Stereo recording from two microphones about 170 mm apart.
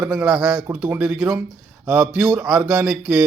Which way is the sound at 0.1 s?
5° right (ahead or behind).